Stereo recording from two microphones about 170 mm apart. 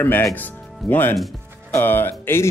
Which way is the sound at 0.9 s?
10° left (ahead or behind).